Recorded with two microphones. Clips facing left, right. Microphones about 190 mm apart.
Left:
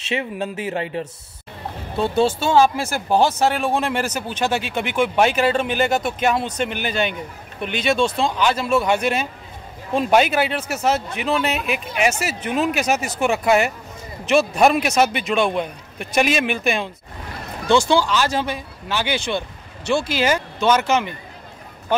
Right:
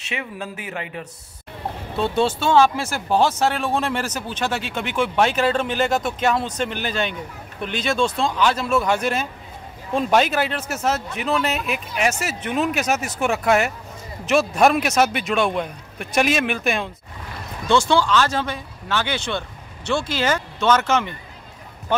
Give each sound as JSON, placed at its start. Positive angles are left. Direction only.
{"t": 0.1, "sound": "speech", "side_deg": 25}
{"t": 2.0, "sound": "speech", "side_deg": 5}
{"t": 17.6, "sound": "speech", "side_deg": 10}